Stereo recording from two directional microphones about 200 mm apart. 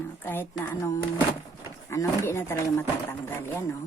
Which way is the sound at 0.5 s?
10° left (ahead or behind).